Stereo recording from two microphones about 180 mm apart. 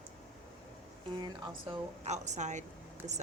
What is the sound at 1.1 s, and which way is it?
Speech, 25° right (ahead or behind).